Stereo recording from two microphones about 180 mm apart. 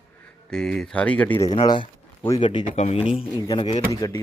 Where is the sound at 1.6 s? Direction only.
25° left (ahead or behind).